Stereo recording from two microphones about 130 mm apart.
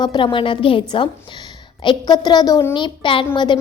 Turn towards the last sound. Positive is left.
turn(degrees=35)  # may be behind; listen again after turning